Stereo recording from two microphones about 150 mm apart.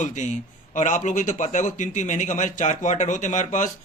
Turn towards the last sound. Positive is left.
turn(degrees=55)  # may be behind; listen again after turning